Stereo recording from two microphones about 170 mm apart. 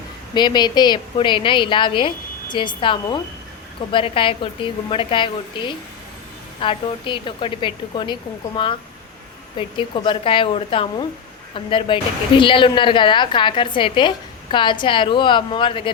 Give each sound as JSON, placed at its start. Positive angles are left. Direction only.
{"t": 0.3, "sound": "a woman's voice", "side_deg": 25}